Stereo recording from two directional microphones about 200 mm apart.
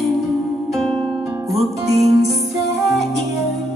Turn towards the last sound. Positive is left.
turn(degrees=0)  # may be behind; listen again after turning